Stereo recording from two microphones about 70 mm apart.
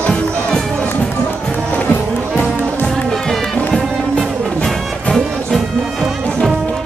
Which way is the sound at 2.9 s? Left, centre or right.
Centre.